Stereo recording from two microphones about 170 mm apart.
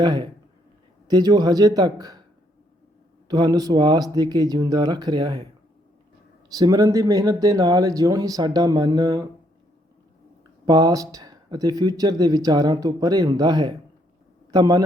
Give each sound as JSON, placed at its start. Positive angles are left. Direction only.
{"t": 0.0, "sound": "speech", "side_deg": -25}
{"t": 3.2, "sound": "speech", "side_deg": -25}
{"t": 6.5, "sound": "speech", "side_deg": -20}
{"t": 10.7, "sound": "speech", "side_deg": -20}